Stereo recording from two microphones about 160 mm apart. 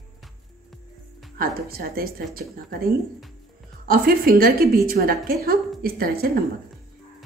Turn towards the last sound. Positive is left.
turn(degrees=-70)  # may be behind; listen again after turning